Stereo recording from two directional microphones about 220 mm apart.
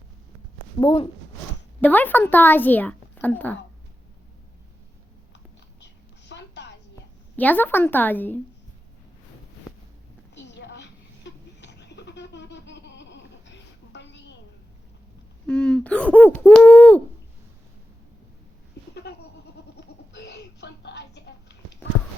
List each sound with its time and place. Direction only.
0.8 s speech: 20° left (ahead or behind)
1.8 s a woman's voice: 10° left (ahead or behind)
5.8 s a sound: 55° left (ahead or behind)
7.3 s a woman's voice: 10° left (ahead or behind)
10.3 s bleat: 55° left (ahead or behind)
15.4 s a woman's voice: 5° left (ahead or behind)
19.1 s goat: 50° left (ahead or behind)
19.7 s a sound: 50° left (ahead or behind)